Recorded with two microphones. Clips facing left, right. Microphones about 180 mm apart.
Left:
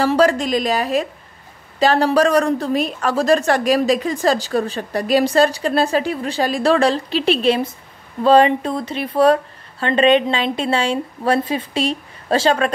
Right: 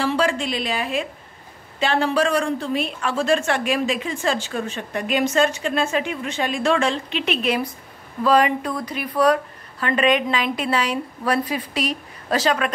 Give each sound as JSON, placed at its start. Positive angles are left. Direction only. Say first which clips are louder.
{"t": 0.0, "sound": "a woman's voice", "louder": "left 6 dB", "side_deg": 40}